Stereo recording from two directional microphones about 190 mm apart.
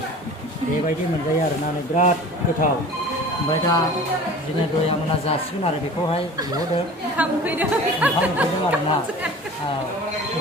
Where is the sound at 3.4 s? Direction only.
20° left (ahead or behind).